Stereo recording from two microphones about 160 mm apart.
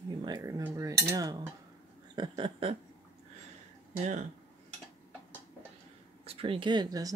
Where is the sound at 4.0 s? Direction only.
45° right (ahead or behind).